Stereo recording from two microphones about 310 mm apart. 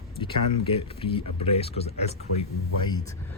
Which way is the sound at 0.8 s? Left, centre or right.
Centre.